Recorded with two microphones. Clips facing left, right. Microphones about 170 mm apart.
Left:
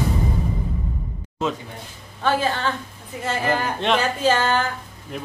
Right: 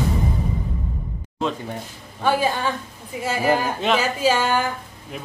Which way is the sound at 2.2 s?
10° right (ahead or behind).